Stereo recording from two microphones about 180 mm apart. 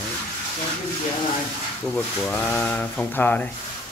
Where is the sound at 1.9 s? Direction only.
10° left (ahead or behind).